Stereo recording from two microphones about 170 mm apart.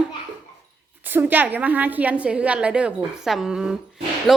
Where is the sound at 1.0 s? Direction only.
10° right (ahead or behind).